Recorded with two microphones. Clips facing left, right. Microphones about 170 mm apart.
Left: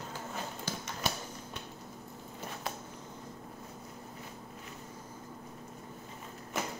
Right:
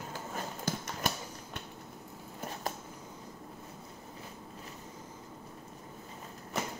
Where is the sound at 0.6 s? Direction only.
50° right (ahead or behind).